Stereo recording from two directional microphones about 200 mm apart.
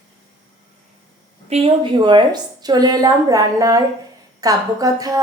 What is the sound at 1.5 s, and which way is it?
A woman's voice, 30° right (ahead or behind).